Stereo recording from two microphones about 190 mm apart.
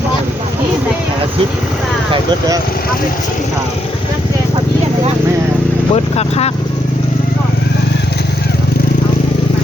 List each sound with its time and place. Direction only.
5.9 s speech: 35° left (ahead or behind)